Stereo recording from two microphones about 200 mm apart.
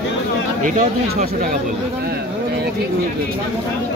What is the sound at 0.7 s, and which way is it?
Speech, 40° right (ahead or behind).